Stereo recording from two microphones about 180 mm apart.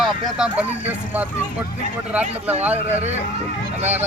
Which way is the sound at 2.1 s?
5° right (ahead or behind).